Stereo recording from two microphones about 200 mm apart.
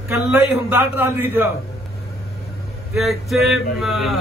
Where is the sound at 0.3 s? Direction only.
10° right (ahead or behind).